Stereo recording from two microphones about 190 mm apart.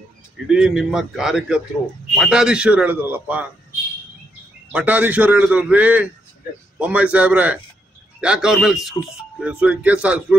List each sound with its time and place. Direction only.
0.5 s a man's voice: 5° right (ahead or behind)
4.7 s a man's voice: 10° right (ahead or behind)